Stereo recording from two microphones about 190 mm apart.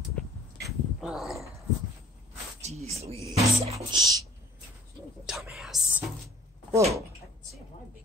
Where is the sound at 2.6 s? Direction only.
35° right (ahead or behind).